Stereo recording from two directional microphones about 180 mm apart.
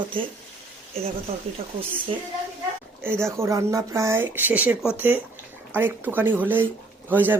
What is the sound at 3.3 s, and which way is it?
Speech, 15° right (ahead or behind).